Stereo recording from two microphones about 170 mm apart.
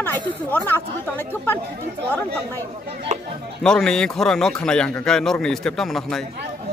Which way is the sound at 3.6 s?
5° left (ahead or behind).